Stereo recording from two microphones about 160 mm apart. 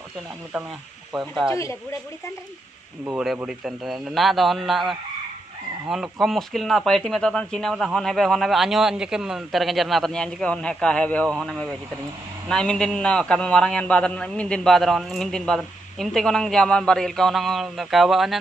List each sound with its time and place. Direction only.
1.1 s a man's voice: centre (ahead or behind)
1.5 s a woman's voice: 20° left (ahead or behind)
3.2 s a man's voice: 5° right (ahead or behind)